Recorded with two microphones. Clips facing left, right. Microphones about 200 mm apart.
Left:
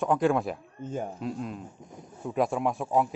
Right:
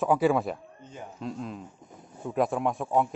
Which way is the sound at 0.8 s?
50° left (ahead or behind).